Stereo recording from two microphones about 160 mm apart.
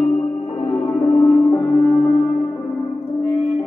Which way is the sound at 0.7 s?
15° left (ahead or behind).